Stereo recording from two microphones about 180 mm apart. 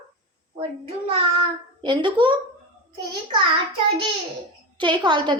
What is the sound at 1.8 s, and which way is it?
Speech, 25° right (ahead or behind).